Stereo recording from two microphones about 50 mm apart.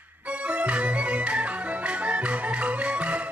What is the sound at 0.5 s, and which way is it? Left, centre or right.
Music, right.